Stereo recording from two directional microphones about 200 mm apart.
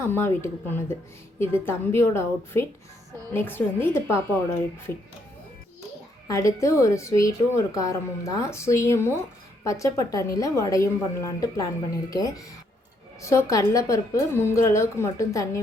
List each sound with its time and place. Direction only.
0.1 s a woman's voice: 10° left (ahead or behind)
6.2 s a woman's voice: 15° left (ahead or behind)